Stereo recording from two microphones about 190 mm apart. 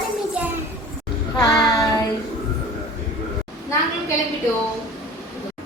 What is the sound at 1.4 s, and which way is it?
Child singing, 20° left (ahead or behind).